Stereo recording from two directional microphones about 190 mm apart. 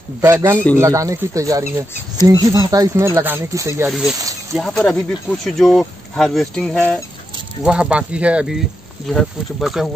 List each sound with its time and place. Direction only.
0.2 s speech: 15° right (ahead or behind)
4.6 s speech: 5° left (ahead or behind)